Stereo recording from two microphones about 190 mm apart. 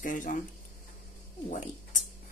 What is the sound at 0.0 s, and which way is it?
Speech, 45° left (ahead or behind).